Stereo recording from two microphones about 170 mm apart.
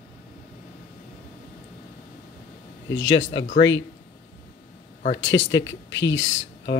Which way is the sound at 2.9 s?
90° left.